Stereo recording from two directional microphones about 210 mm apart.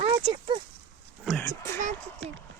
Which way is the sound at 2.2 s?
65° right (ahead or behind).